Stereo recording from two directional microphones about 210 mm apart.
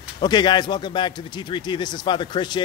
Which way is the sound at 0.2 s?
20° left (ahead or behind).